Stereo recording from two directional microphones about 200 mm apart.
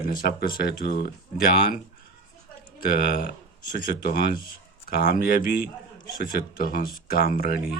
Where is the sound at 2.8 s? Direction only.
45° left (ahead or behind).